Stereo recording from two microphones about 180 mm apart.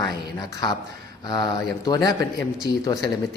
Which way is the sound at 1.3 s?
20° left (ahead or behind).